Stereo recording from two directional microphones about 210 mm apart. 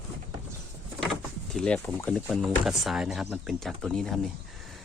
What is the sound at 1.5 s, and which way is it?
Speech, 5° left (ahead or behind).